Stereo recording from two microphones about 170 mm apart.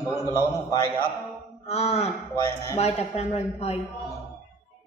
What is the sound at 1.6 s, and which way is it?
Speech, 40° left (ahead or behind).